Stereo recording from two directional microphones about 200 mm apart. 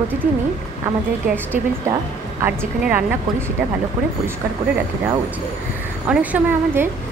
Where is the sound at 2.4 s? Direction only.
10° right (ahead or behind).